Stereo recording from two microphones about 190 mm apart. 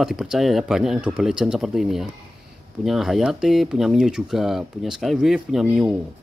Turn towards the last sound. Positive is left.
turn(degrees=-5)  # may be behind; listen again after turning